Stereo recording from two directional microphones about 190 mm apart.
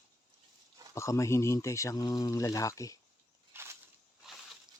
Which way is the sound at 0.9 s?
15° left (ahead or behind).